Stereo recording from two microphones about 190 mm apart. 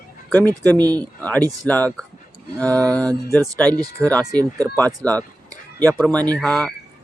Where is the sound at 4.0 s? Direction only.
5° right (ahead or behind).